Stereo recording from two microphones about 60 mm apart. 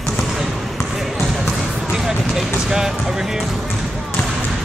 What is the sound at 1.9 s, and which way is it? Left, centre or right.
Music, centre.